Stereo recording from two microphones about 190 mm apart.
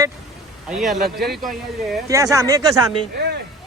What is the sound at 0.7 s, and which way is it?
Speech, centre (ahead or behind).